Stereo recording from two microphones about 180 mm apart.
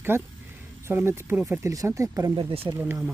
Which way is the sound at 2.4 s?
30° right (ahead or behind).